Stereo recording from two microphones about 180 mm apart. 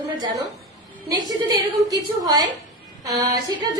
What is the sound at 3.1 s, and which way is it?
Speech, 20° right (ahead or behind).